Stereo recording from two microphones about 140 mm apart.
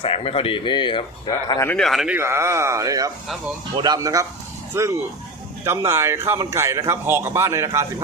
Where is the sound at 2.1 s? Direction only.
20° right (ahead or behind).